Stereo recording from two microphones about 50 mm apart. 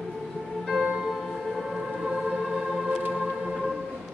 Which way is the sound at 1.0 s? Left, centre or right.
Centre.